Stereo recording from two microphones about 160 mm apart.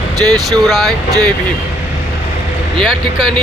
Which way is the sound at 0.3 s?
Centre (ahead or behind).